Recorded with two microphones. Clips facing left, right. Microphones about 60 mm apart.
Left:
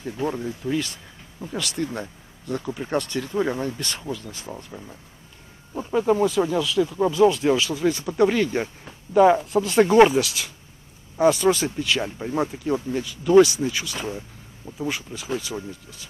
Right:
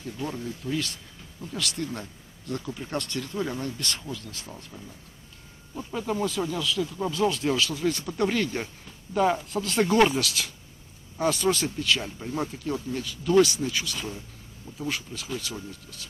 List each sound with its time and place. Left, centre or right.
0.0 s speech: left
1.4 s speech: centre
3.3 s speech: left; by 12.0 s centre
12.0 s speech: left
12.9 s speech: centre
13.9 s speech: left
14.8 s speech: centre